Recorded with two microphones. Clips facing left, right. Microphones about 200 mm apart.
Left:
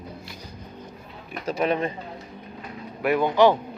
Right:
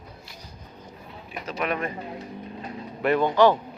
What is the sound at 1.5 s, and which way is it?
Speech, 30° left (ahead or behind).